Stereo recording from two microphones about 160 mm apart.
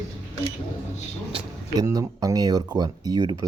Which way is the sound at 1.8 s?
20° right (ahead or behind).